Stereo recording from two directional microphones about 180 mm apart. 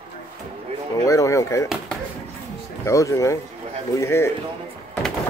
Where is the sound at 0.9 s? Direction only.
15° left (ahead or behind).